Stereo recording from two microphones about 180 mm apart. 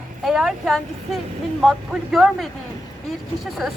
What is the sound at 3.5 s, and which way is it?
Speech, centre (ahead or behind).